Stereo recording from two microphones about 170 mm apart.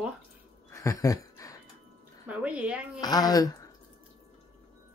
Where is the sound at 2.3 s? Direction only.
10° right (ahead or behind).